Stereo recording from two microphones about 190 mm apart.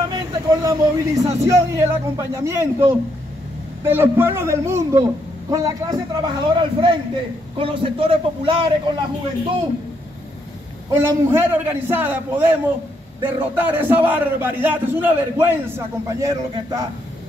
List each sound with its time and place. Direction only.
0.1 s a man's voice: 20° right (ahead or behind)
11.0 s a man's voice: 10° right (ahead or behind)